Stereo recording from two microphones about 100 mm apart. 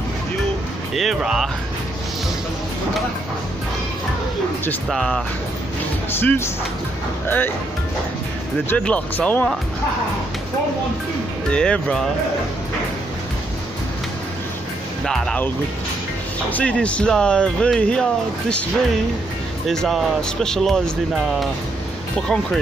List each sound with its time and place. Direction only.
0.9 s speech: 5° right (ahead or behind)
4.8 s speech: 5° left (ahead or behind)
6.1 s speech: 25° left (ahead or behind)
8.6 s speech: 15° left (ahead or behind)
11.5 s speech: 10° left (ahead or behind)
15.0 s speech: 5° left (ahead or behind)
16.4 s speech: 15° left (ahead or behind)
19.7 s speech: 5° left (ahead or behind)